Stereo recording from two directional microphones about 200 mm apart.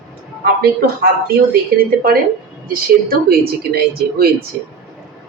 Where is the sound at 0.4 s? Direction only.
50° right (ahead or behind).